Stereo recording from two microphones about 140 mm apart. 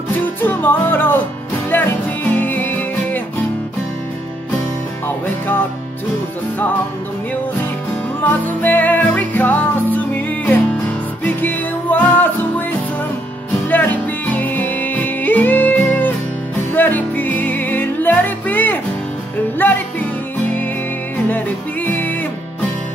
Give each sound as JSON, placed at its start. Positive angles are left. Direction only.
{"t": 0.4, "sound": "music", "side_deg": 15}
{"t": 8.2, "sound": "music", "side_deg": 10}
{"t": 13.7, "sound": "music", "side_deg": 10}
{"t": 21.8, "sound": "music", "side_deg": 15}